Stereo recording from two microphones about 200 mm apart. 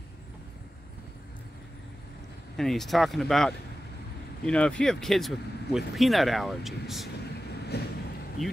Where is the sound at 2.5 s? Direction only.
Centre (ahead or behind).